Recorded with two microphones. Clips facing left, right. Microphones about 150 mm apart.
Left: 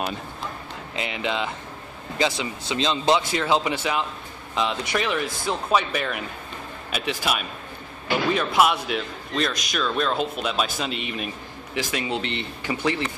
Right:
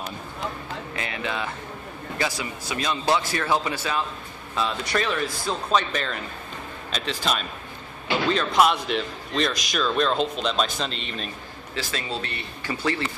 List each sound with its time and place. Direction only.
0.9 s a man's voice: 20° left (ahead or behind)